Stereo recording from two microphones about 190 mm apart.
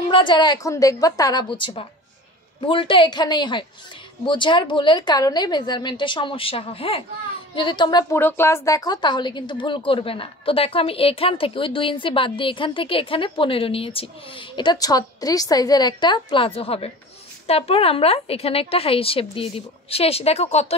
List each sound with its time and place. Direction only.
0.1 s a woman's voice: 25° left (ahead or behind)
8.2 s a woman's voice: 10° left (ahead or behind); by 20.6 s 35° left (ahead or behind)